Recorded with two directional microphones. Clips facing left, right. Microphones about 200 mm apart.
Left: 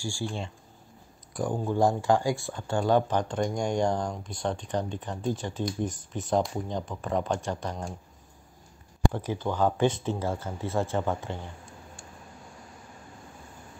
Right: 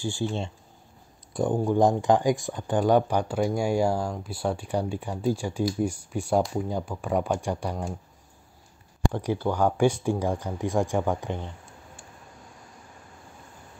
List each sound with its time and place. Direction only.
0.0 s speech: 20° right (ahead or behind)
9.1 s speech: 10° right (ahead or behind)